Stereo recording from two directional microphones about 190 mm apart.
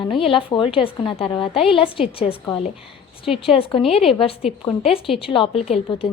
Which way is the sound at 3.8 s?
Centre (ahead or behind).